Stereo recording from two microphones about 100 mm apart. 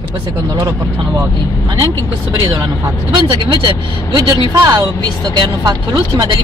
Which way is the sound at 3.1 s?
50° right (ahead or behind).